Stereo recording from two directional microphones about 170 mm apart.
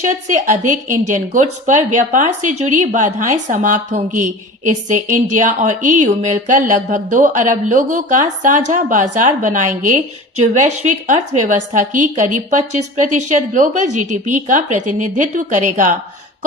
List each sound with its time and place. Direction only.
0.0 s speech: 45° right (ahead or behind)